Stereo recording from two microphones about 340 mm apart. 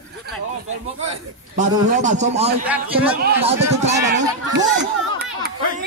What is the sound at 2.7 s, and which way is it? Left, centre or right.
Speech, centre.